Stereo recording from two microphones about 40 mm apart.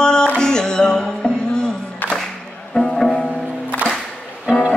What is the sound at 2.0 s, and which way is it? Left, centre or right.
Music, left.